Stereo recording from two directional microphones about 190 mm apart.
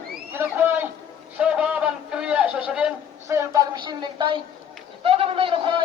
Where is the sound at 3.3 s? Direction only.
15° right (ahead or behind).